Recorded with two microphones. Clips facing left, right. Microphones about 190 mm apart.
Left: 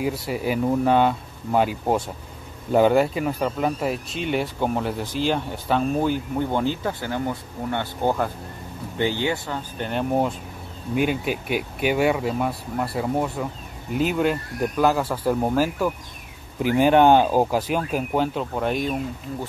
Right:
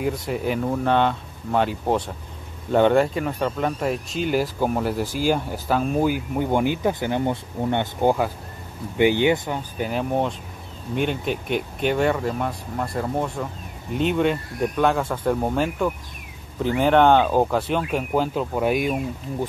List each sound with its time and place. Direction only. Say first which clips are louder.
0.3 s speech: left 4 dB; 5° left (ahead or behind); by 9.6 s 15° right (ahead or behind)
9.8 s speech: left 1 dB; 5° right (ahead or behind)